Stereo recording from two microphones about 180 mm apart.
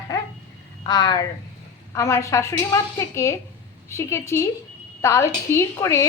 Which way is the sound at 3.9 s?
15° left (ahead or behind).